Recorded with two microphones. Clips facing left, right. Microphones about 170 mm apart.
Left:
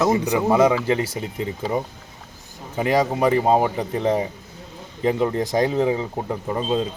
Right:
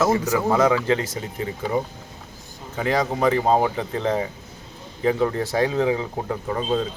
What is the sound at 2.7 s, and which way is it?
Speech, 15° left (ahead or behind).